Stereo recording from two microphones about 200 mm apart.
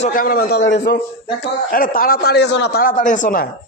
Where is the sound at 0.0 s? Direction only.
40° left (ahead or behind); by 0.9 s 60° left (ahead or behind).